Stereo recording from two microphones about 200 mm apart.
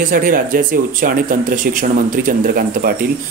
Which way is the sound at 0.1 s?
45° right (ahead or behind).